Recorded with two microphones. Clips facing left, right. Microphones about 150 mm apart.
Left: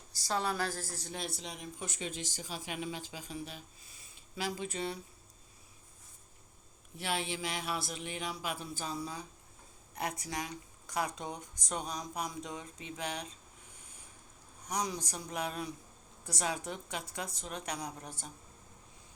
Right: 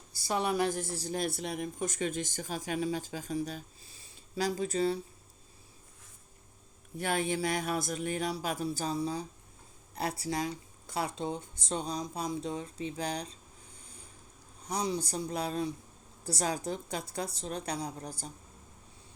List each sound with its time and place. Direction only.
0.2 s speech: 15° right (ahead or behind); by 1.2 s 30° right (ahead or behind)
1.2 s speech: 55° right (ahead or behind); by 4.9 s 35° right (ahead or behind)
7.0 s speech: 45° right (ahead or behind)
14.7 s a woman's voice: 30° right (ahead or behind)